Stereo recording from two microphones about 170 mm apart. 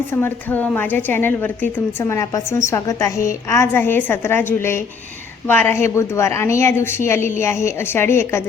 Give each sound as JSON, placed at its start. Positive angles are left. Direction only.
{"t": 0.1, "sound": "a woman's voice", "side_deg": 10}